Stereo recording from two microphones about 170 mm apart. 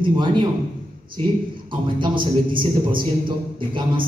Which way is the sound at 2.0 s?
30° right (ahead or behind).